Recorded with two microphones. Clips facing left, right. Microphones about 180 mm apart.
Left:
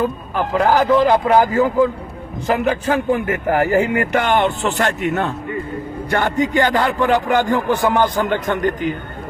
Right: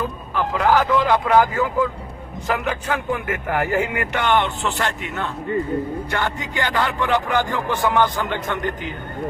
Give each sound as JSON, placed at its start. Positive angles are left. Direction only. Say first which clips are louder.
{"t": 0.6, "sound": "a man's voice", "louder": "left 4 dB", "side_deg": 35}